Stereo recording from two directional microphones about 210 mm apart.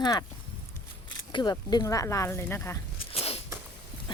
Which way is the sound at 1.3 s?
20° left (ahead or behind).